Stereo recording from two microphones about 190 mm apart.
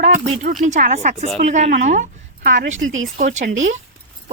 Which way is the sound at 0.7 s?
40° right (ahead or behind).